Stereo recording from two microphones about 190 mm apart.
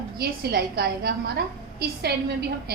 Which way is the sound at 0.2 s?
55° right (ahead or behind).